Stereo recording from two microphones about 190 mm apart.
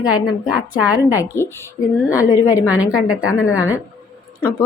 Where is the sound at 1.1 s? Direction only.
15° left (ahead or behind).